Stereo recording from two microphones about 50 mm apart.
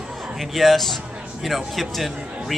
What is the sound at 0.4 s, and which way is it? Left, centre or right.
Speech, centre.